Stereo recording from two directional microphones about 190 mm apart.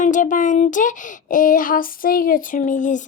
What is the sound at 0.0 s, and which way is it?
Speech, 40° left (ahead or behind).